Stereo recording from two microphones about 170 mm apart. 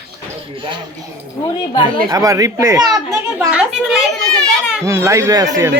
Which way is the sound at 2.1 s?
20° right (ahead or behind).